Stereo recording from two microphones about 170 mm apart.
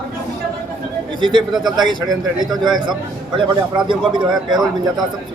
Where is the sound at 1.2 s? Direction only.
25° right (ahead or behind).